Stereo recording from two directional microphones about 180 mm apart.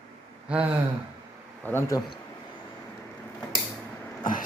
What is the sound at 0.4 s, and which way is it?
Speech, 5° right (ahead or behind).